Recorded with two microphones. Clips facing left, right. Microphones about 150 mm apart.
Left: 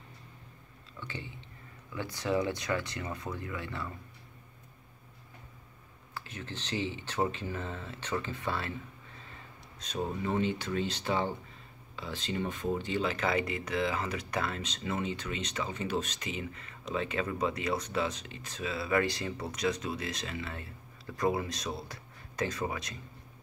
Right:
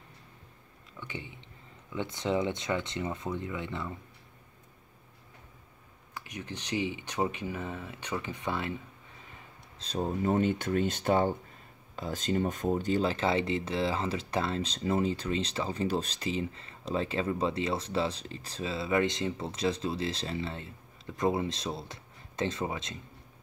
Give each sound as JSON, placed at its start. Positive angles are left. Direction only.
{"t": 0.9, "sound": "speech", "side_deg": -15}
{"t": 6.1, "sound": "speech", "side_deg": -15}
{"t": 9.8, "sound": "speech", "side_deg": -35}